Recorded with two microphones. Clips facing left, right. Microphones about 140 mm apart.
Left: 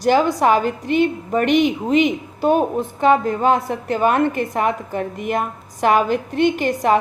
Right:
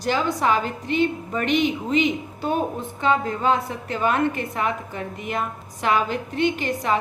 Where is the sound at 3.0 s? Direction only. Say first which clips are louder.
Left 5 dB; 40° left (ahead or behind).